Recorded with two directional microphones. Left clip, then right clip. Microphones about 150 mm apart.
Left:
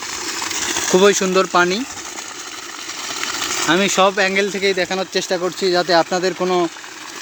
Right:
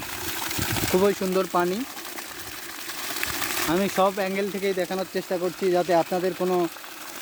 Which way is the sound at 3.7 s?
5° right (ahead or behind).